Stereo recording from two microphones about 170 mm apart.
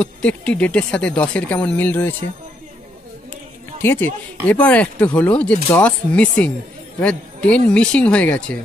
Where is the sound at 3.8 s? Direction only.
15° left (ahead or behind).